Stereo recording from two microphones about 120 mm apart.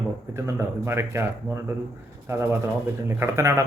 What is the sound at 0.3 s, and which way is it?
Speech, 20° right (ahead or behind).